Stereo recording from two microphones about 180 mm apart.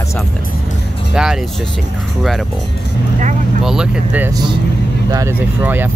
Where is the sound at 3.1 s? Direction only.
40° right (ahead or behind).